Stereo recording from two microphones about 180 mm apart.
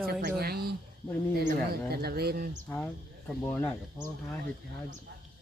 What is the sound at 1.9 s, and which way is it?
Speech, 60° right (ahead or behind).